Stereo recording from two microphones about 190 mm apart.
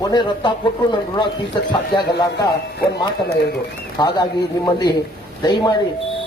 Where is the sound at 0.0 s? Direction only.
20° left (ahead or behind).